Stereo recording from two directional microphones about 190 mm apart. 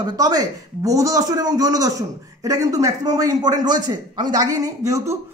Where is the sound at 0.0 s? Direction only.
20° right (ahead or behind).